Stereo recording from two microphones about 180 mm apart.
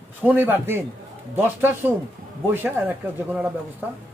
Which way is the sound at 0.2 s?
10° right (ahead or behind).